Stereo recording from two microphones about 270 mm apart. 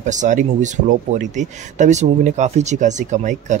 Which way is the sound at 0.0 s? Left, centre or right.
Right.